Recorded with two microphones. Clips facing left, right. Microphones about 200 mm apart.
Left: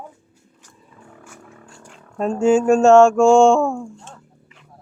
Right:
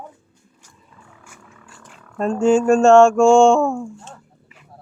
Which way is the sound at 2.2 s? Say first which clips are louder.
Even; 5° left (ahead or behind).